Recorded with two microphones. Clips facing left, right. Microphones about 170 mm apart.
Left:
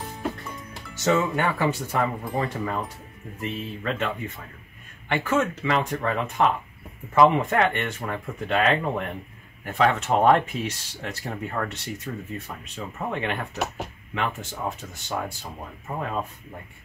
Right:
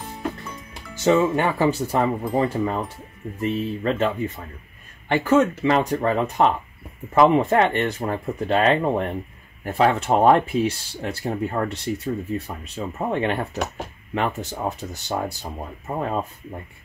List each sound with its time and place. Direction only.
1.0 s speech: 30° right (ahead or behind)